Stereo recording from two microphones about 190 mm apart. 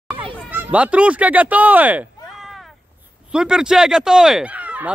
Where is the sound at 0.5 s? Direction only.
10° right (ahead or behind).